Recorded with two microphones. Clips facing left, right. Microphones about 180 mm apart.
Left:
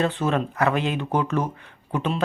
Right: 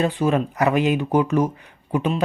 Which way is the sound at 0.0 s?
15° right (ahead or behind).